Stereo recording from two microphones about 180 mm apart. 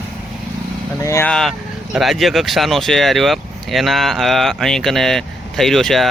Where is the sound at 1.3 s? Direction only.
Centre (ahead or behind).